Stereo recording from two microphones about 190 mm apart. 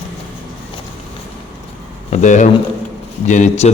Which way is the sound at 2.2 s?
40° left (ahead or behind).